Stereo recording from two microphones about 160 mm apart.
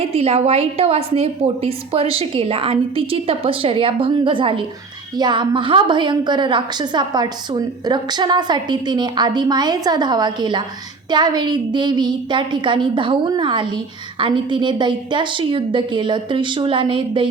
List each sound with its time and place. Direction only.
0.0 s a woman's voice: 40° right (ahead or behind)